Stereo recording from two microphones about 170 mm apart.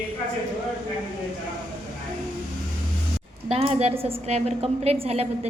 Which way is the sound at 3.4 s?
35° right (ahead or behind).